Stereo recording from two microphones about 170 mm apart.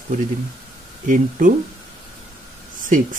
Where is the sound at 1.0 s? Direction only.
50° right (ahead or behind).